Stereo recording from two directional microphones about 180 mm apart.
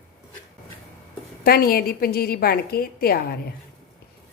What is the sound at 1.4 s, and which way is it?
A woman's voice, 55° left (ahead or behind).